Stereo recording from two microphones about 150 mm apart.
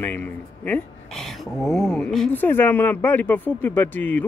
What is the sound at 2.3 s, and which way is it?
Speech, 10° left (ahead or behind).